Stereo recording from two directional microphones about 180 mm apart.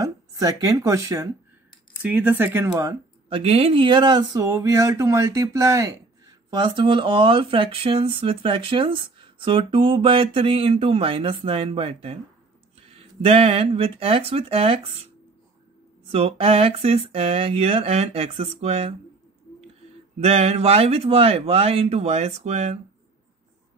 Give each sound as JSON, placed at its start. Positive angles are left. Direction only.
{"t": 0.0, "sound": "speech", "side_deg": -20}
{"t": 16.1, "sound": "speech", "side_deg": -35}
{"t": 20.2, "sound": "speech", "side_deg": -35}